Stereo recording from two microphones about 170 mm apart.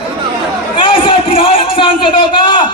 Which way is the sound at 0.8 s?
30° left (ahead or behind).